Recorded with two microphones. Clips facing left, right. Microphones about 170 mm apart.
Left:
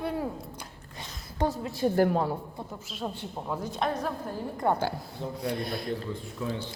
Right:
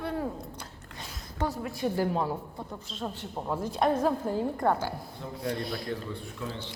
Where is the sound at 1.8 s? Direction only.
35° left (ahead or behind).